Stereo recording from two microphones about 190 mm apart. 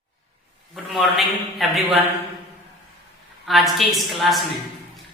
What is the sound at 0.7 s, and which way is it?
A man's voice, centre (ahead or behind).